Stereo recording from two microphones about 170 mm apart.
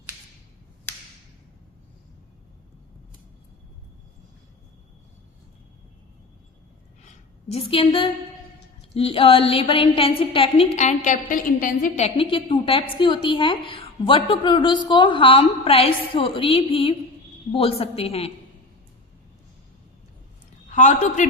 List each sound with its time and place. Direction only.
7.0 s a sound: 35° left (ahead or behind)
9.0 s a woman's voice: 35° left (ahead or behind); by 12.0 s 55° left (ahead or behind)
12.0 s a woman's voice: 30° left (ahead or behind)
20.7 s a woman's voice: 45° left (ahead or behind)